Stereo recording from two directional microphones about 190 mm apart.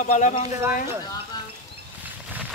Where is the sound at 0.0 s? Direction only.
40° left (ahead or behind).